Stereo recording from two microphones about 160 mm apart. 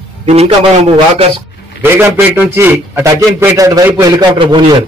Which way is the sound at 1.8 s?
15° right (ahead or behind).